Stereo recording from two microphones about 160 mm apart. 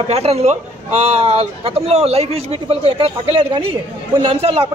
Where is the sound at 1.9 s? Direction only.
40° right (ahead or behind).